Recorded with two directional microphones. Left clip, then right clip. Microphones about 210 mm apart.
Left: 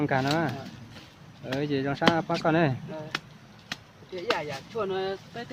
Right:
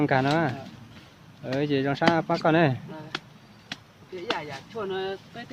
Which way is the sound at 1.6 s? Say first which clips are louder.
Right 2 dB; 40° right (ahead or behind).